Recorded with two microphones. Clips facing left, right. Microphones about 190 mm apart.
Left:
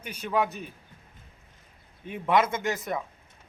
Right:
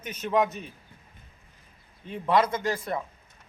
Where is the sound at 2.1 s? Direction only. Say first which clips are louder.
Even; 10° left (ahead or behind).